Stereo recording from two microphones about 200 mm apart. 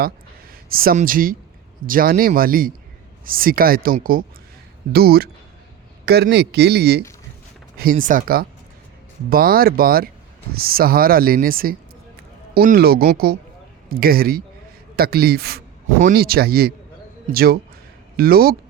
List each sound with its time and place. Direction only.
0.0 s a man's voice: 45° right (ahead or behind)